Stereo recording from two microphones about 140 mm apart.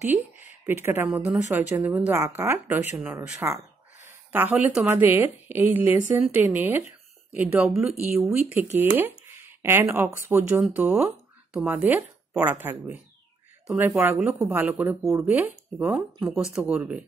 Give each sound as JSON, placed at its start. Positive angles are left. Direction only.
{"t": 0.0, "sound": "speech", "side_deg": -10}
{"t": 9.4, "sound": "speech", "side_deg": -15}